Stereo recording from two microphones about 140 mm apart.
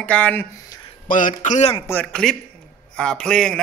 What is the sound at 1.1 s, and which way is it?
Speech, 75° left (ahead or behind).